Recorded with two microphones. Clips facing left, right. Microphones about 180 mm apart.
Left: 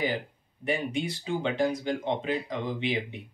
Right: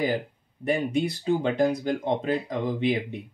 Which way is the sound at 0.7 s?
40° right (ahead or behind).